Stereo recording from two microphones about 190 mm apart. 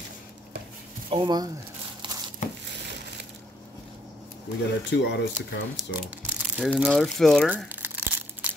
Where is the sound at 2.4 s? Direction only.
40° left (ahead or behind).